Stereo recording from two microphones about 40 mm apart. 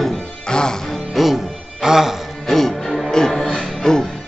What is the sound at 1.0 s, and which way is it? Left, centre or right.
Music, centre.